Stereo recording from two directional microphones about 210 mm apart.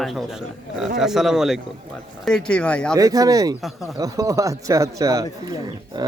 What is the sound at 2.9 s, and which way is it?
Speech, 15° right (ahead or behind).